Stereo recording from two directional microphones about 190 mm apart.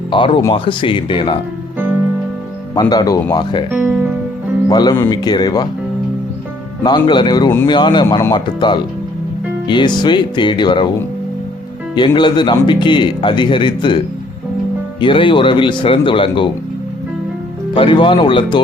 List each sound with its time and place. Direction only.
0.1 s speech: 25° left (ahead or behind)
2.7 s speech: 20° left (ahead or behind)
3.7 s speech: 5° right (ahead or behind)
4.7 s speech: 20° left (ahead or behind)
6.8 s speech: 25° left (ahead or behind)
11.9 s speech: 25° left (ahead or behind)
15.0 s speech: 25° left (ahead or behind)
17.7 s speech: 25° left (ahead or behind)